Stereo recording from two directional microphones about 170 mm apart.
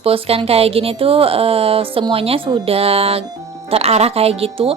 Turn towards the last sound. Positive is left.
turn(degrees=-35)  # may be behind; listen again after turning